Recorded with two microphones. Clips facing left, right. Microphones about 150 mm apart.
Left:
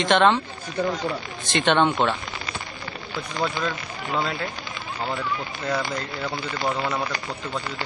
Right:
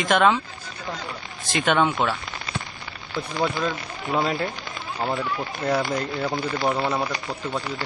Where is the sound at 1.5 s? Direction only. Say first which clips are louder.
Left 1 dB; centre (ahead or behind).